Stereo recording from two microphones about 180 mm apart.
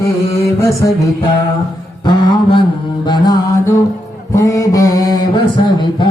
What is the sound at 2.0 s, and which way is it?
Mantra, 25° left (ahead or behind).